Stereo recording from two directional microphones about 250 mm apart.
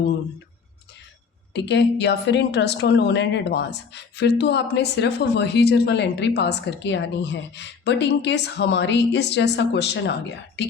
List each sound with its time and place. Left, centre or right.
1.5 s a woman's voice: left